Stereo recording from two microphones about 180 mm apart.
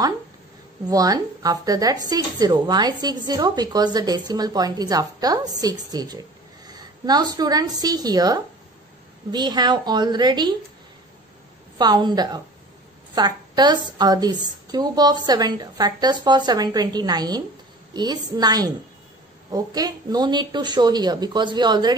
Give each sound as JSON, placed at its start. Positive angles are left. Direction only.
{"t": 0.8, "sound": "a woman's voice", "side_deg": -20}
{"t": 11.8, "sound": "speech", "side_deg": -25}